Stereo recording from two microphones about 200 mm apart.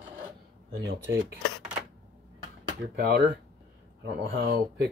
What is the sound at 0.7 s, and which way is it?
Speech, 65° right (ahead or behind).